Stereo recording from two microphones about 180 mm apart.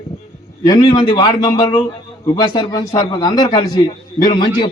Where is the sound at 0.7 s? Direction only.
20° left (ahead or behind).